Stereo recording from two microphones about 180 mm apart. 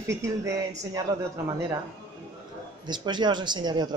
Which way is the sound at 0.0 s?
15° right (ahead or behind).